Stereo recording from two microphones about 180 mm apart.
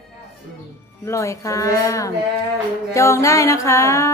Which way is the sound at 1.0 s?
15° left (ahead or behind).